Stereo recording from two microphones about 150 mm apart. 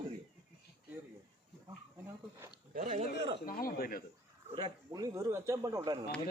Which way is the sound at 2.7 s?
55° right (ahead or behind).